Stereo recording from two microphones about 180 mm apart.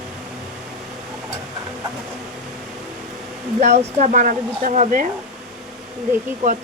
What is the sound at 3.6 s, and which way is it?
Speech, 40° right (ahead or behind).